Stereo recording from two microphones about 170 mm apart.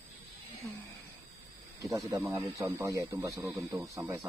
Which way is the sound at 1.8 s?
20° right (ahead or behind).